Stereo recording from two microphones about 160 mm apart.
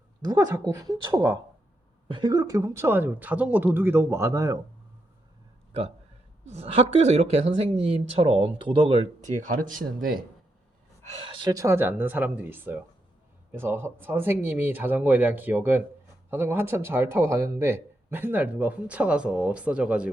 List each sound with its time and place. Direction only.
0.2 s a woman's voice: 25° right (ahead or behind)
6.4 s speech: 40° right (ahead or behind)
9.2 s speech: 55° right (ahead or behind)
11.0 s speech: 40° right (ahead or behind); by 20.1 s 5° right (ahead or behind)